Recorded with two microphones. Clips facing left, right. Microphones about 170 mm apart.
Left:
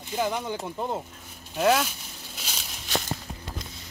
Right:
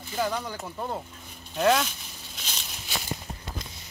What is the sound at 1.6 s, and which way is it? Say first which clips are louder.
Speech: even; 5° left (ahead or behind).